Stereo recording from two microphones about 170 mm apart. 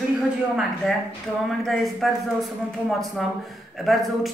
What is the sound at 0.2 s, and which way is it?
A man's voice, centre (ahead or behind).